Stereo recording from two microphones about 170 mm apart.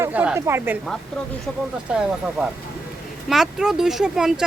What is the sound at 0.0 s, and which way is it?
Speech, 10° right (ahead or behind).